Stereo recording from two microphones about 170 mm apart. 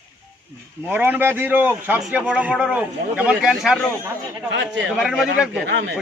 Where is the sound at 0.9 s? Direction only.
10° right (ahead or behind).